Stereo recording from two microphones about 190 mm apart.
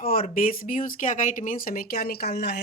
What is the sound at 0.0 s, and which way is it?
Speech, 50° left (ahead or behind).